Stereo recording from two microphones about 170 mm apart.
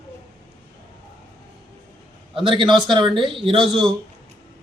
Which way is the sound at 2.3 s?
30° right (ahead or behind).